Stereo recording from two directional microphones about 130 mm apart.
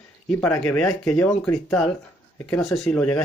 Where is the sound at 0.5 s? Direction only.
5° left (ahead or behind).